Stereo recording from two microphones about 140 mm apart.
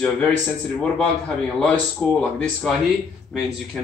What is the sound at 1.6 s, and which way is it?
A man's voice, 10° left (ahead or behind).